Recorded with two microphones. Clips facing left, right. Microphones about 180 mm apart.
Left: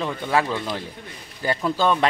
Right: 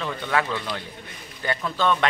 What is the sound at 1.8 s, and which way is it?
Speech, 35° left (ahead or behind).